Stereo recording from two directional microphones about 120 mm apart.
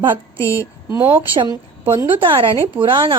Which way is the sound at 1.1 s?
40° right (ahead or behind).